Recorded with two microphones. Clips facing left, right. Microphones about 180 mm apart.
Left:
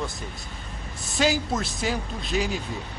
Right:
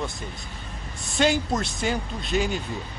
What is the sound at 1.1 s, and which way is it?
A man's voice, centre (ahead or behind).